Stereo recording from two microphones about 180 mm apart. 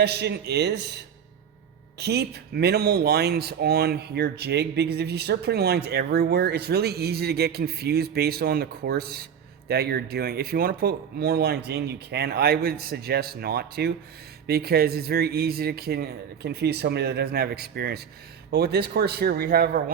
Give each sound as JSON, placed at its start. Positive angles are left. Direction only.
{"t": 0.0, "sound": "speech", "side_deg": -65}